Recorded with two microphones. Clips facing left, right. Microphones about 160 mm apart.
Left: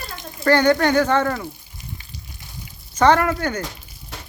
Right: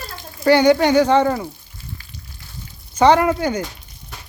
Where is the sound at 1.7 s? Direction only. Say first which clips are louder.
Even; 15° left (ahead or behind).